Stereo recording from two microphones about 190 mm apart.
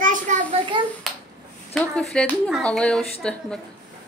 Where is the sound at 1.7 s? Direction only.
5° left (ahead or behind).